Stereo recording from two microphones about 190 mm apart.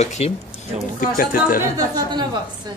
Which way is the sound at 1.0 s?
45° left (ahead or behind).